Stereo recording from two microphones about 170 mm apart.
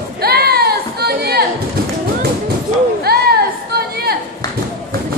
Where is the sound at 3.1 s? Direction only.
65° right (ahead or behind).